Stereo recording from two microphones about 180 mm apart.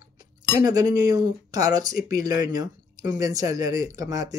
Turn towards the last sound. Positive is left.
turn(degrees=-20)  # may be behind; listen again after turning